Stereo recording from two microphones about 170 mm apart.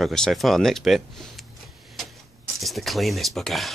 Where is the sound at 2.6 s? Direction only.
Centre (ahead or behind).